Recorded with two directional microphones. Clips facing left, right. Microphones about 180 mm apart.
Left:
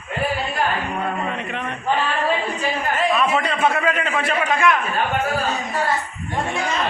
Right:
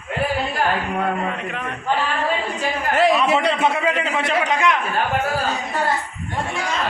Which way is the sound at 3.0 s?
75° right (ahead or behind).